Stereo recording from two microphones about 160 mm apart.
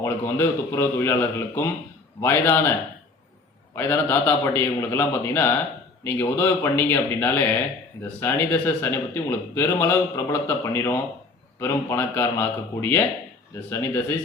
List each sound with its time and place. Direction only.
0.0 s a man's voice: 15° left (ahead or behind)
2.2 s a man's voice: 15° left (ahead or behind)
3.8 s a man's voice: 15° left (ahead or behind)